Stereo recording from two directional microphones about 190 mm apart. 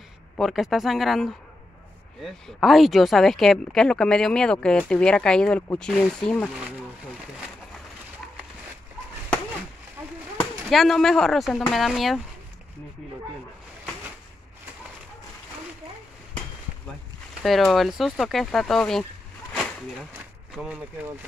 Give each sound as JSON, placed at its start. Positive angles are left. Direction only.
{"t": 0.4, "sound": "speech", "side_deg": 0}
{"t": 10.7, "sound": "speech", "side_deg": 0}
{"t": 17.4, "sound": "speech", "side_deg": 0}
{"t": 20.6, "sound": "speech", "side_deg": -5}